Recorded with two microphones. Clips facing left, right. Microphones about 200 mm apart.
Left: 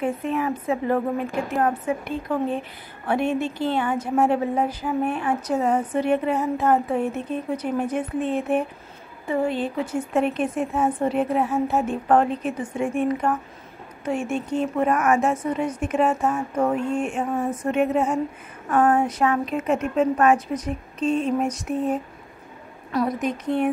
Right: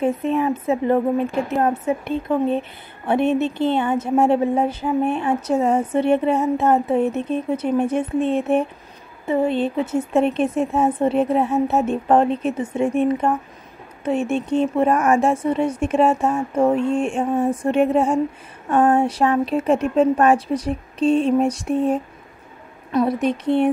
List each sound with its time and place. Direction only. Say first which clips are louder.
0.0 s a woman's voice: right 5 dB; 25° right (ahead or behind)